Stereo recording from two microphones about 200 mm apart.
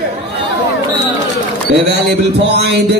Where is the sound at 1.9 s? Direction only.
55° right (ahead or behind).